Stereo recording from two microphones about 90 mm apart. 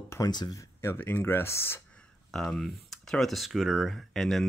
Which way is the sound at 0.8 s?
25° left (ahead or behind).